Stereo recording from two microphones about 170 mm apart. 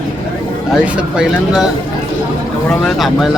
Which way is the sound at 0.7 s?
5° right (ahead or behind).